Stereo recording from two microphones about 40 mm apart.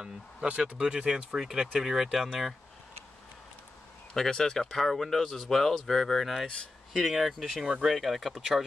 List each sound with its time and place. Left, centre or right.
0.0 s speech: right
0.7 s speech: centre
1.3 s speech: centre
4.1 s speech: centre
6.4 s speech: left
6.9 s speech: centre